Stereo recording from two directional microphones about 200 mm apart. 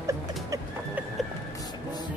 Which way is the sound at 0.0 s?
15° right (ahead or behind).